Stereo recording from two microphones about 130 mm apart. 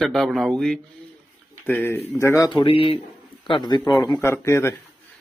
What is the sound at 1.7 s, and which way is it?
Speech, 15° left (ahead or behind).